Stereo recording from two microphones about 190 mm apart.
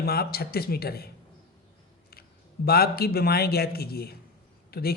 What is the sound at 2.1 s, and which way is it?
Speech, 55° left (ahead or behind).